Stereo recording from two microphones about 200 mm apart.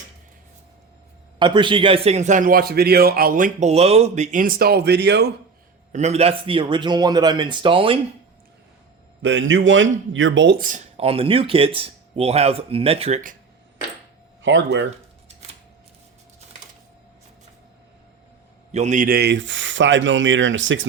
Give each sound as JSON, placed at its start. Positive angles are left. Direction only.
{"t": 1.4, "sound": "a man's voice", "side_deg": -25}
{"t": 5.9, "sound": "speech", "side_deg": -35}
{"t": 9.2, "sound": "speech", "side_deg": -70}
{"t": 10.6, "sound": "speech", "side_deg": -40}
{"t": 14.4, "sound": "speech", "side_deg": -65}
{"t": 18.7, "sound": "speech", "side_deg": -35}